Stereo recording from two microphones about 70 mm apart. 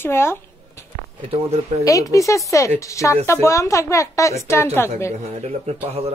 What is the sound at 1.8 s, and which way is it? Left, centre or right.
Speech, left.